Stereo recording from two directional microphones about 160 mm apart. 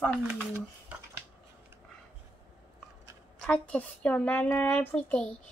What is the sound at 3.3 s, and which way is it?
Speech, 5° left (ahead or behind).